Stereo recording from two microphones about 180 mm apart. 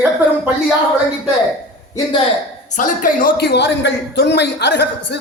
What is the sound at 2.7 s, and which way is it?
A man's voice, 45° left (ahead or behind).